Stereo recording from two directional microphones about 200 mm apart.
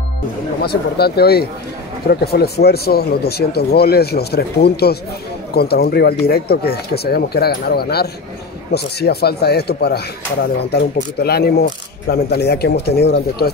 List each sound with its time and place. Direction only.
0.6 s speech: 50° left (ahead or behind)